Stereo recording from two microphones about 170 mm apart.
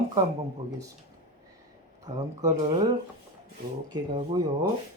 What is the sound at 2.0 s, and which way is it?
Speech, 20° right (ahead or behind).